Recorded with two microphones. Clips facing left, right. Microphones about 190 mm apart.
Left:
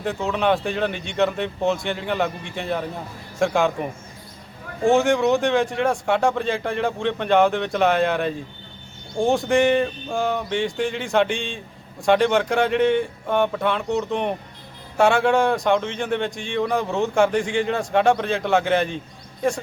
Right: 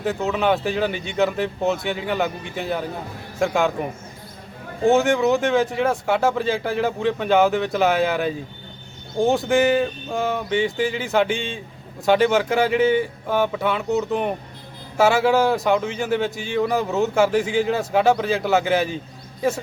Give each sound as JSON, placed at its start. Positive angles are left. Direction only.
{"t": 0.0, "sound": "speech", "side_deg": 0}